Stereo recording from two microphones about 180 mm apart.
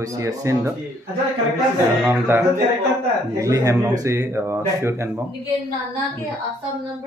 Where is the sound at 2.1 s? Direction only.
10° right (ahead or behind).